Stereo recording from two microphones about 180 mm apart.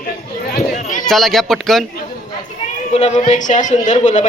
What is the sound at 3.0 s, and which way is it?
A man's voice, 40° left (ahead or behind).